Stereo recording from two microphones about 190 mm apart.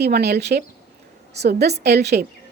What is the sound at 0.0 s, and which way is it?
A woman's voice, 60° right (ahead or behind).